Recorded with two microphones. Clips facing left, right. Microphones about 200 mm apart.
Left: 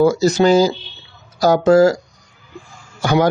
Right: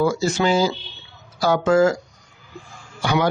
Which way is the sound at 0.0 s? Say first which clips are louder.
Left 6 dB; 40° left (ahead or behind).